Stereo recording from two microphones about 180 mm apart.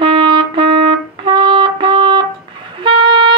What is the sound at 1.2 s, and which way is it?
Music, 30° right (ahead or behind).